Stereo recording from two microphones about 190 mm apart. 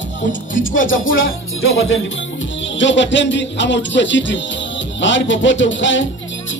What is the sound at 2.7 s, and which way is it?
Speech, 75° left (ahead or behind).